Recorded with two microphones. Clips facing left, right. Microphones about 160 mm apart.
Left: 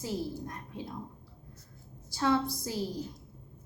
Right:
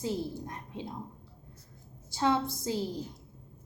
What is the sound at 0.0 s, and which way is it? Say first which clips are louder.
Speech: right 1 dB; 20° right (ahead or behind).